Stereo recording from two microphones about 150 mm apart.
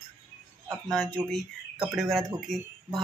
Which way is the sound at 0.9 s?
Centre (ahead or behind).